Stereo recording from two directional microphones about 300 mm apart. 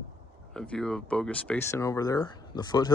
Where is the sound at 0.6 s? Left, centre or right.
Centre.